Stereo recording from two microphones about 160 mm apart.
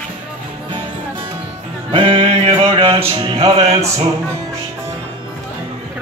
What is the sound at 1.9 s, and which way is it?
Music, 35° right (ahead or behind).